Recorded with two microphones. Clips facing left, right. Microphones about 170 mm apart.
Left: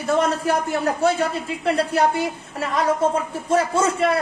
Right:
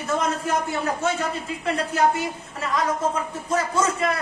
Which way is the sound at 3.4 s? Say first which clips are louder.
Left 4 dB; 30° left (ahead or behind).